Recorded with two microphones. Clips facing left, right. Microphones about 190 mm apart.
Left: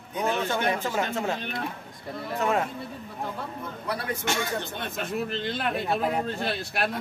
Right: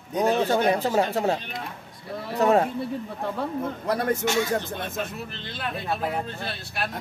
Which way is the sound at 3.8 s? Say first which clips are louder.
Right 6 dB; 45° right (ahead or behind).